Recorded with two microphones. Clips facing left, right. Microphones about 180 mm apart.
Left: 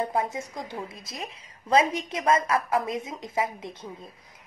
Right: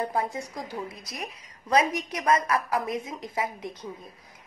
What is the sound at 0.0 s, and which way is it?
A woman's voice, 20° left (ahead or behind).